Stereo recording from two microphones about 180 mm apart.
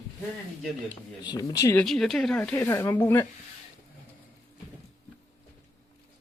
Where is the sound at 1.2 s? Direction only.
20° left (ahead or behind).